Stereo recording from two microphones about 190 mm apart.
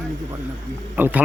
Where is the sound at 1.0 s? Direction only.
10° right (ahead or behind).